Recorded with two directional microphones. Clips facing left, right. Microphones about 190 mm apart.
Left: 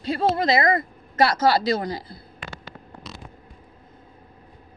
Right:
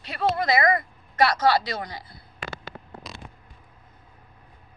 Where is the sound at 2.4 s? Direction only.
90° right.